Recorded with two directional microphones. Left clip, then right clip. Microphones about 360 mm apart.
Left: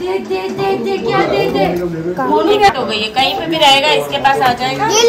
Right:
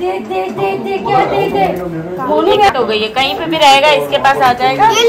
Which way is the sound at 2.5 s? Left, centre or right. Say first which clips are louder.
Right 3 dB; centre.